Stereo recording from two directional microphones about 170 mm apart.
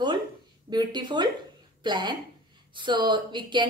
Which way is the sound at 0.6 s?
25° right (ahead or behind).